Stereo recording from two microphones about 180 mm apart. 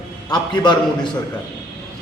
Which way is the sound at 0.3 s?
25° left (ahead or behind).